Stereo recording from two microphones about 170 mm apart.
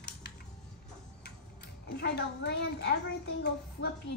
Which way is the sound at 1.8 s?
75° left (ahead or behind).